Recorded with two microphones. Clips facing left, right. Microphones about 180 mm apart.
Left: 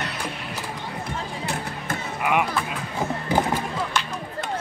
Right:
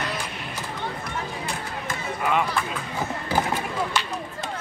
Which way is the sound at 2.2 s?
15° left (ahead or behind).